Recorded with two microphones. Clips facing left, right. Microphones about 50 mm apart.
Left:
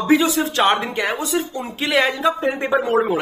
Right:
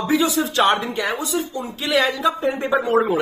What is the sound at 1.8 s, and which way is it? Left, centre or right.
Speech, left.